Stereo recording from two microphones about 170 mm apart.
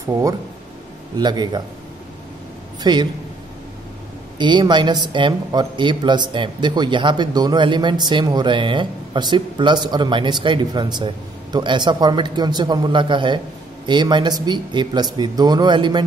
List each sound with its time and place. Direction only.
0.0 s a woman's voice: 20° right (ahead or behind)
2.8 s a woman's voice: 25° right (ahead or behind)
4.4 s a woman's voice: 25° right (ahead or behind)